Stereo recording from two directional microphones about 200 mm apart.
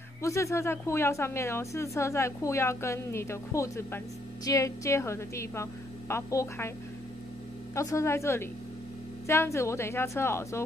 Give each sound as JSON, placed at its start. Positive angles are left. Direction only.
{"t": 0.2, "sound": "a woman's voice", "side_deg": 15}
{"t": 7.7, "sound": "a woman's voice", "side_deg": 15}